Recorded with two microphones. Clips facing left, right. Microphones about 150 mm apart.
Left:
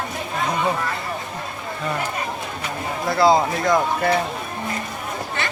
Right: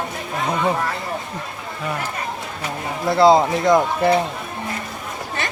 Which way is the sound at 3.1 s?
25° right (ahead or behind).